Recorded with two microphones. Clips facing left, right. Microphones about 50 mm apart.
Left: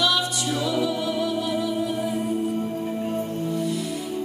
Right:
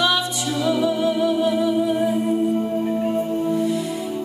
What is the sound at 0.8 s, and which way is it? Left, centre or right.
Music, right.